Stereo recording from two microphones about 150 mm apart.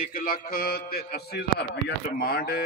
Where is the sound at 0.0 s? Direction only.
75° left (ahead or behind).